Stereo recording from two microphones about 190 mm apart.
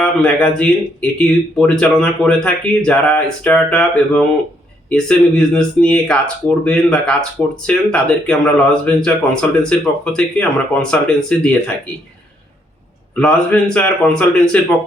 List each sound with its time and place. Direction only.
0.0 s speech: 5° left (ahead or behind)
13.1 s speech: 5° left (ahead or behind)